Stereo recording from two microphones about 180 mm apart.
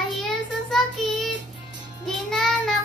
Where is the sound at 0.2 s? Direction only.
Centre (ahead or behind).